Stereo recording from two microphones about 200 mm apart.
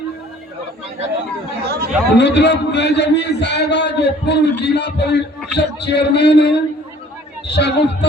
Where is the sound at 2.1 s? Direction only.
60° left (ahead or behind).